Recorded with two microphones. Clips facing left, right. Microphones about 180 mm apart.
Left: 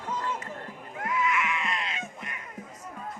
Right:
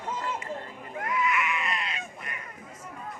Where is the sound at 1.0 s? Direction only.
25° left (ahead or behind).